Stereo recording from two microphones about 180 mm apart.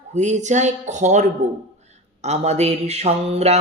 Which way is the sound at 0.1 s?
40° right (ahead or behind).